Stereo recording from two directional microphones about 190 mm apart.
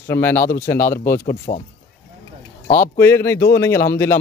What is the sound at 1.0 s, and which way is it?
Speech, 50° left (ahead or behind).